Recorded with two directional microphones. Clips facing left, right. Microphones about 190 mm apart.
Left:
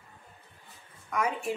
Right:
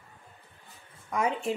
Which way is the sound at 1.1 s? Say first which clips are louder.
Right 2 dB; 25° right (ahead or behind).